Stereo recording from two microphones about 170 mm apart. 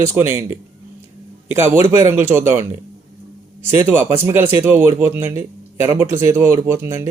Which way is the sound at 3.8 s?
15° right (ahead or behind).